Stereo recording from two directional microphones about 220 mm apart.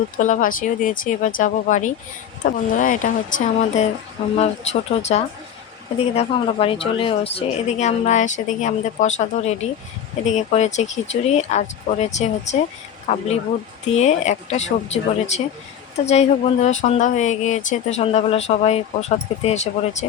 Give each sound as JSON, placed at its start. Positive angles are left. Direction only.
{"t": 0.2, "sound": "speech", "side_deg": 35}